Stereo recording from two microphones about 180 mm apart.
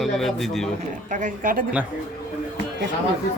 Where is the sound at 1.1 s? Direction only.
45° right (ahead or behind).